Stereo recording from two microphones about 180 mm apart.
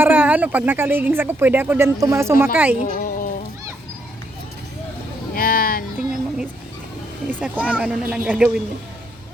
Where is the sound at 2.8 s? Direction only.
45° left (ahead or behind).